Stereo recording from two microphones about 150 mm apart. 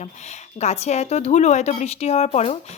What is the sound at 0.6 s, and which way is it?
A woman's voice, 45° left (ahead or behind).